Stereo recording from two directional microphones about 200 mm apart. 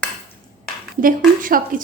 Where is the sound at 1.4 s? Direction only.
45° right (ahead or behind).